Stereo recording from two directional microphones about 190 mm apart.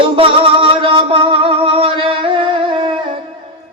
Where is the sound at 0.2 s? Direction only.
30° right (ahead or behind).